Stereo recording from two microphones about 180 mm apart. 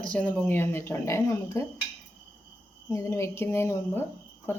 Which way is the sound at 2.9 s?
15° left (ahead or behind).